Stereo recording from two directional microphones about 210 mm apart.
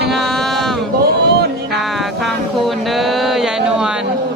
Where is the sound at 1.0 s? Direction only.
50° right (ahead or behind).